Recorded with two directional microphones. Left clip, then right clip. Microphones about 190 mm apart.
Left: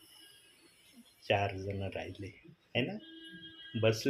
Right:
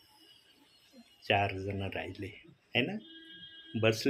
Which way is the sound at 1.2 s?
15° right (ahead or behind).